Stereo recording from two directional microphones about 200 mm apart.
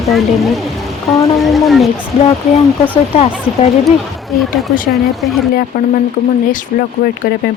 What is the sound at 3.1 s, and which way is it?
Speech, 30° left (ahead or behind).